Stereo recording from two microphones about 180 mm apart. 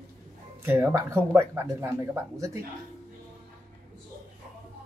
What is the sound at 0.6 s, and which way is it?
Speech, 10° right (ahead or behind).